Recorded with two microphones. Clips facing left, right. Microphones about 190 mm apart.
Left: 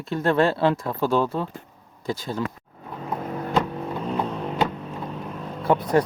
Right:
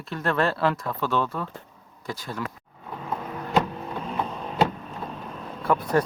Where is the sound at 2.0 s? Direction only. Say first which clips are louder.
Left 5 dB; 25° left (ahead or behind).